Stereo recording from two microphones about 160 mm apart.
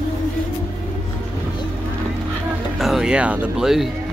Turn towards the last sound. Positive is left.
turn(degrees=-5)  # may be behind; listen again after turning